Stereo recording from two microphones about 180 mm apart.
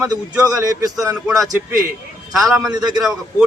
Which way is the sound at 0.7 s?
20° right (ahead or behind).